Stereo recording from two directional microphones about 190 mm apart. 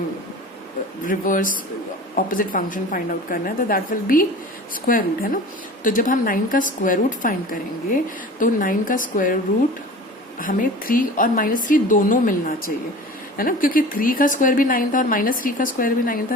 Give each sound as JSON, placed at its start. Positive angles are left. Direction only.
{"t": 1.0, "sound": "a woman's voice", "side_deg": 45}
{"t": 10.4, "sound": "a woman's voice", "side_deg": 45}